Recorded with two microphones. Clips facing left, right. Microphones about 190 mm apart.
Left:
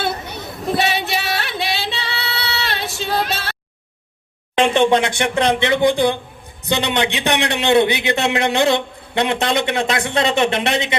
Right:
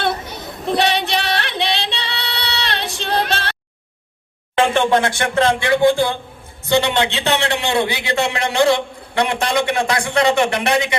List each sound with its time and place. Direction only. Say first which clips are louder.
0.7 s singing: right 2 dB; 5° left (ahead or behind)
4.5 s a man's voice: left 1 dB; 20° left (ahead or behind)